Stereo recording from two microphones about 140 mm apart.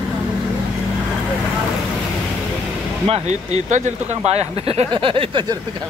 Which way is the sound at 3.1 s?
55° right (ahead or behind).